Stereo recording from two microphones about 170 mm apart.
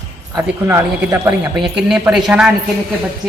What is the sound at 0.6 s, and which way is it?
Speech, 15° right (ahead or behind).